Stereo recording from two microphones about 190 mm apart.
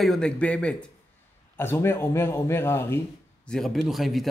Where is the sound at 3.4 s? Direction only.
Centre (ahead or behind).